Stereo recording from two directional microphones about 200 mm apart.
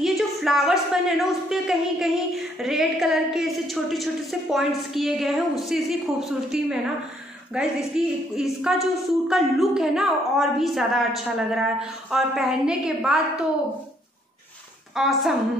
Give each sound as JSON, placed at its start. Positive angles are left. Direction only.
{"t": 0.0, "sound": "a woman's voice", "side_deg": 0}
{"t": 15.0, "sound": "a woman's voice", "side_deg": 0}